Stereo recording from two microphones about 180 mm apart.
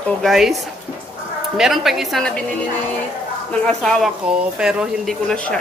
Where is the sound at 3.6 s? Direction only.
5° left (ahead or behind).